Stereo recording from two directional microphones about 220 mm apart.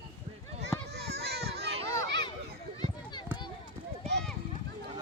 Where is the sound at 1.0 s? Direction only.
50° right (ahead or behind).